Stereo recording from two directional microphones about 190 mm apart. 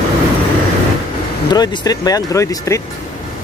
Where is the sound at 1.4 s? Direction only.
20° left (ahead or behind).